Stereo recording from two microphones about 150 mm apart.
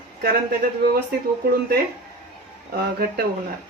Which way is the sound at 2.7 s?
90° right.